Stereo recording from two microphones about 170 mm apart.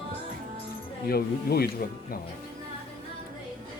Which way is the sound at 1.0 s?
65° left (ahead or behind).